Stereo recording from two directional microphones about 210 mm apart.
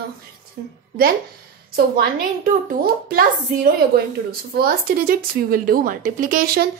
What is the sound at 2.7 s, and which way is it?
Speech, 45° right (ahead or behind).